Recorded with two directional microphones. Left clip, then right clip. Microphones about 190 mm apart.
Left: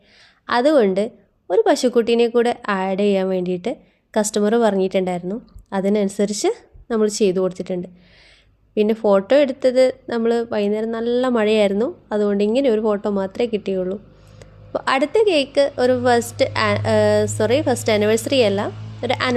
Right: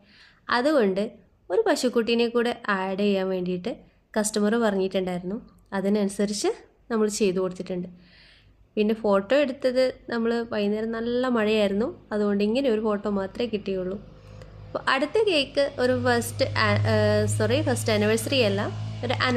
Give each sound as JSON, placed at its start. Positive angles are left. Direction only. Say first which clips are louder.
{"t": 0.4, "sound": "a woman's voice", "louder": "left 6 dB", "side_deg": 30}